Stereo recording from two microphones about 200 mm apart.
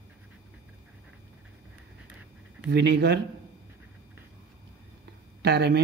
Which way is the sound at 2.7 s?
55° right (ahead or behind).